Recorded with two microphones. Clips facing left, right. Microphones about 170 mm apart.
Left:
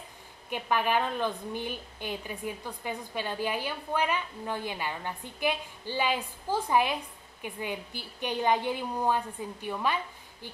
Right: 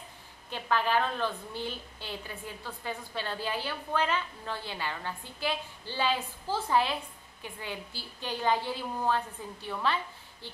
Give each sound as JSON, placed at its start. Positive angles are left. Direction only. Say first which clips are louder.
{"t": 0.5, "sound": "a woman's voice", "louder": "left 1 dB", "side_deg": 15}